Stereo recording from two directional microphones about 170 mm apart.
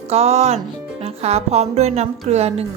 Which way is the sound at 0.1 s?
40° right (ahead or behind).